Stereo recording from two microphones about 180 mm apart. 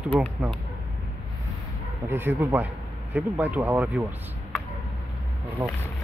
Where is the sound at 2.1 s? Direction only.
10° right (ahead or behind).